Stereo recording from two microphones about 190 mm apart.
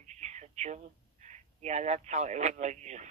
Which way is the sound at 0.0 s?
40° right (ahead or behind).